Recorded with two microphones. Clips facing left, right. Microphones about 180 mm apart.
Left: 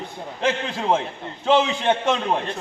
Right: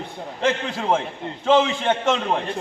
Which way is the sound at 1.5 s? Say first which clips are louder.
Right 1 dB; centre (ahead or behind).